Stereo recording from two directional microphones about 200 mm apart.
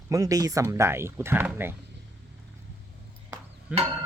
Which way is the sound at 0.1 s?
15° right (ahead or behind).